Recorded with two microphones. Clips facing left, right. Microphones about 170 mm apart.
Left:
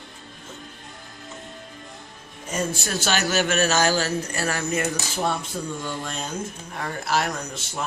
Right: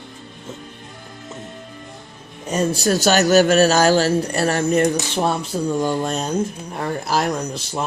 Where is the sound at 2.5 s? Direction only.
40° right (ahead or behind).